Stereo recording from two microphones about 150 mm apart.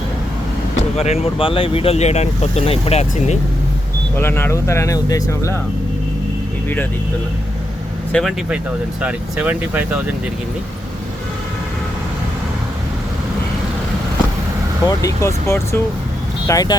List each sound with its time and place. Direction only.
0.9 s speech: 45° left (ahead or behind)
4.2 s speech: 15° left (ahead or behind)
8.1 s speech: 5° left (ahead or behind)
9.0 s speech: 10° right (ahead or behind)
14.8 s speech: 20° left (ahead or behind)